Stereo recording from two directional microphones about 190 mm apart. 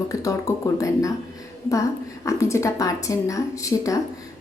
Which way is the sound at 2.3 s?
15° left (ahead or behind).